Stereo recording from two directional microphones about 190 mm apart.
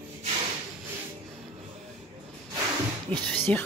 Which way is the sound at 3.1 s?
30° right (ahead or behind).